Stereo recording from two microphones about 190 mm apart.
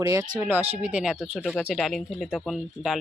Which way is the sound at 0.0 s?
15° right (ahead or behind).